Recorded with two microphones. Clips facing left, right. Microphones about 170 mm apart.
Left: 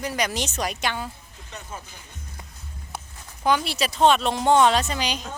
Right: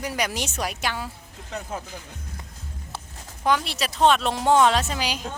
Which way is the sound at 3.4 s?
Centre (ahead or behind).